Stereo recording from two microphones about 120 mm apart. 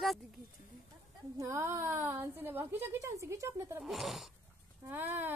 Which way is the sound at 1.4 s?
25° right (ahead or behind).